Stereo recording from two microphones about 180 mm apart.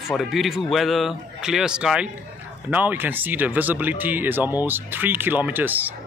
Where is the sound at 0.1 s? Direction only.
Centre (ahead or behind).